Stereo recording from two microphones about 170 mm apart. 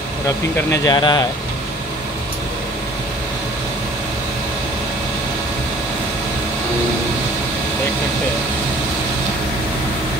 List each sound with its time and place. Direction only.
0.7 s speech: 25° left (ahead or behind)